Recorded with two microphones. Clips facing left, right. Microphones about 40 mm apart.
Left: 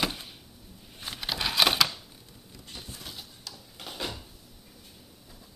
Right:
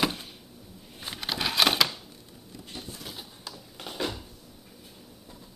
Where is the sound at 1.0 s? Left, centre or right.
Centre.